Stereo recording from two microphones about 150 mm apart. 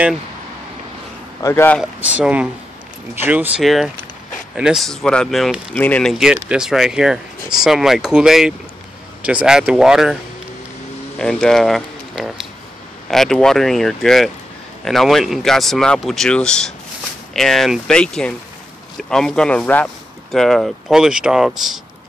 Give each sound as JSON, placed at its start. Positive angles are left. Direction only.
{"t": 1.4, "sound": "speech", "side_deg": 15}
{"t": 2.1, "sound": "speech", "side_deg": -10}
{"t": 6.1, "sound": "speech", "side_deg": -5}
{"t": 11.1, "sound": "speech", "side_deg": 5}